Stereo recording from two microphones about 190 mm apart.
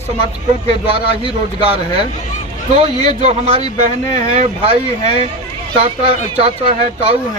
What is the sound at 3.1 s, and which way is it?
Speech, 35° right (ahead or behind).